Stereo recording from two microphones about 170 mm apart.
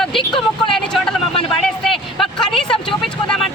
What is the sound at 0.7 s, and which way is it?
Vehicle, 5° left (ahead or behind).